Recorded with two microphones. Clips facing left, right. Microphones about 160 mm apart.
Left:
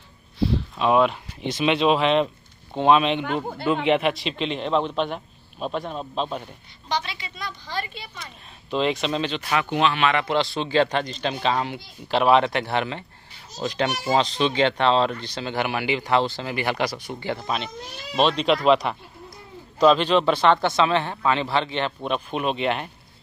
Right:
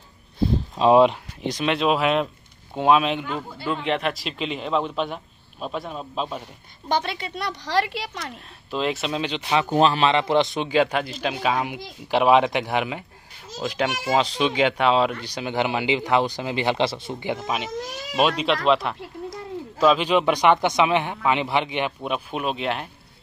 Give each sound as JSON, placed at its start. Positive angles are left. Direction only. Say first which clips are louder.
{"t": 0.8, "sound": "speech", "louder": "right 4 dB", "side_deg": -25}
{"t": 1.4, "sound": "a man's voice", "louder": "left 2 dB", "side_deg": 0}
{"t": 6.9, "sound": "a woman's voice", "louder": "right 4 dB", "side_deg": -50}
{"t": 8.6, "sound": "a man's voice", "louder": "left 2 dB", "side_deg": -5}
{"t": 9.7, "sound": "a man's voice", "louder": "right 3 dB", "side_deg": -35}
{"t": 18.9, "sound": "a sound", "louder": "right 10 dB", "side_deg": -90}
{"t": 19.8, "sound": "speech", "louder": "left 1 dB", "side_deg": -5}